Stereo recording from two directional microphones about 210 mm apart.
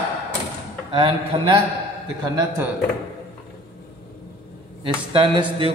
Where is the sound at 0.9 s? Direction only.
25° right (ahead or behind).